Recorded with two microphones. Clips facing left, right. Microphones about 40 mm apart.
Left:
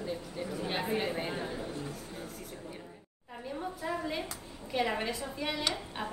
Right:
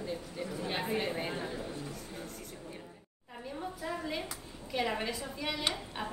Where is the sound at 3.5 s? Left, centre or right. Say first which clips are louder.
Left 3 dB; centre.